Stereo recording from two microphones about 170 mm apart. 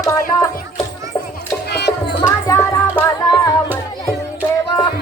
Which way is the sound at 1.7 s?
80° left.